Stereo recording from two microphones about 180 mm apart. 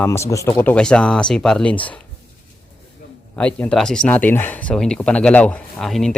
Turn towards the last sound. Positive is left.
turn(degrees=0)  # may be behind; listen again after turning